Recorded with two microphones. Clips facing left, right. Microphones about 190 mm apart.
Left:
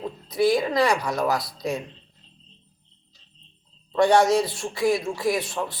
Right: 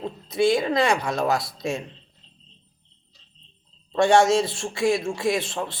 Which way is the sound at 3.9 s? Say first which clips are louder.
Even; 25° right (ahead or behind).